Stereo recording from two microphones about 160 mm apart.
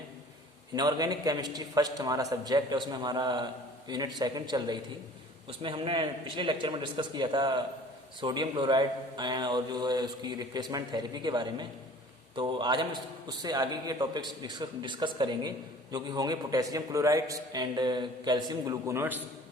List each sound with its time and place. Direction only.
0.7 s a man's voice: 25° right (ahead or behind)